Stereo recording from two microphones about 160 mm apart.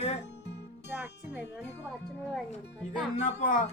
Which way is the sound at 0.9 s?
10° right (ahead or behind).